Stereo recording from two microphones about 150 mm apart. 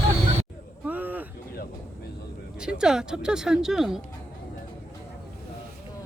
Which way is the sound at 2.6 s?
5° right (ahead or behind).